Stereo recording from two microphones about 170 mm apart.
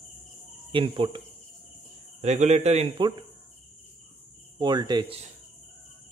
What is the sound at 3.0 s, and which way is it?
Speech, 25° right (ahead or behind).